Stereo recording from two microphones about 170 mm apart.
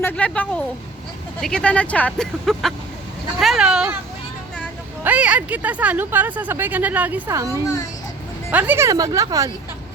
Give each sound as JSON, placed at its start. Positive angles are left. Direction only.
{"t": 0.0, "sound": "speech", "side_deg": 10}
{"t": 5.0, "sound": "speech", "side_deg": -5}
{"t": 7.6, "sound": "a child's voice", "side_deg": 20}
{"t": 8.4, "sound": "speech", "side_deg": -10}